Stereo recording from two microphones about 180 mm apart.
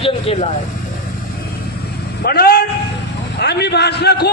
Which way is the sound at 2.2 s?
60° left (ahead or behind).